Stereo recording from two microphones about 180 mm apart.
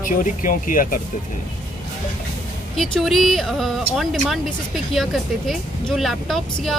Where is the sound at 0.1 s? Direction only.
50° left (ahead or behind).